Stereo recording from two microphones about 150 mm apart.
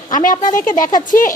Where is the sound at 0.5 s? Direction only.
60° left (ahead or behind).